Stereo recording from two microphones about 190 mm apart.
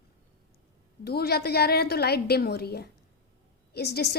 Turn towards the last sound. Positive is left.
turn(degrees=55)  # may be behind; listen again after turning